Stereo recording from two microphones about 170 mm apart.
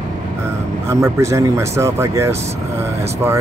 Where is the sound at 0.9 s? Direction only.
15° right (ahead or behind).